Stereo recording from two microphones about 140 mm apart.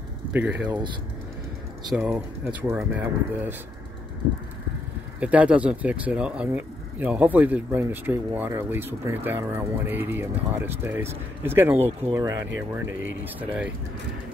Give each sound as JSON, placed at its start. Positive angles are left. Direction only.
{"t": 0.3, "sound": "speech", "side_deg": -10}
{"t": 1.9, "sound": "speech", "side_deg": -10}
{"t": 5.2, "sound": "speech", "side_deg": -10}